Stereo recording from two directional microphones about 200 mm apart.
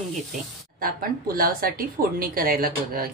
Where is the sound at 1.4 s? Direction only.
45° right (ahead or behind).